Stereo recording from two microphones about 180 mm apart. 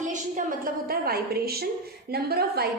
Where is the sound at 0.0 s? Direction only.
45° right (ahead or behind).